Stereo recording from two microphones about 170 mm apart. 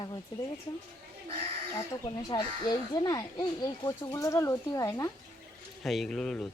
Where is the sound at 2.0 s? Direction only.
25° left (ahead or behind).